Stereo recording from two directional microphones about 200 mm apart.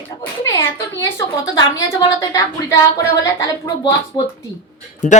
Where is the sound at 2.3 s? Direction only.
15° left (ahead or behind).